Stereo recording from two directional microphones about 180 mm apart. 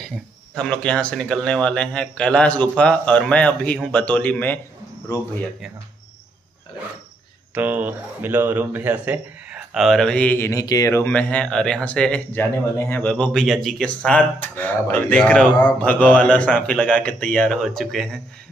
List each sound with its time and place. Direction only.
0.6 s speech: 5° left (ahead or behind)
7.5 s speech: 10° right (ahead or behind)